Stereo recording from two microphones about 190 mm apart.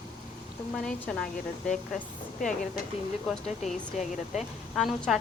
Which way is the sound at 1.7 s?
40° left (ahead or behind).